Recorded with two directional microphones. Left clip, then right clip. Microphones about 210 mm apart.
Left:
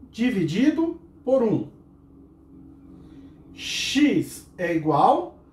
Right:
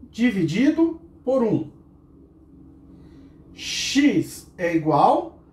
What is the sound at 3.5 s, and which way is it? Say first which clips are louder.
Gasp: right 1 dB; 15° left (ahead or behind).